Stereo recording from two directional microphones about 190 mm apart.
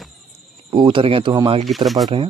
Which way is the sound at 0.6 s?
25° right (ahead or behind).